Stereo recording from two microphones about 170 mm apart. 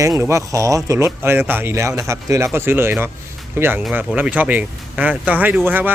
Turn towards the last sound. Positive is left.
turn(degrees=-10)  # may be behind; listen again after turning